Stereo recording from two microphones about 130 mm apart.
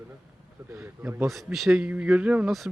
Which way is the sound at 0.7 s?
20° right (ahead or behind).